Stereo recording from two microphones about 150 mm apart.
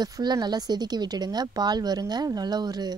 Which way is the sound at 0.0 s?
25° right (ahead or behind).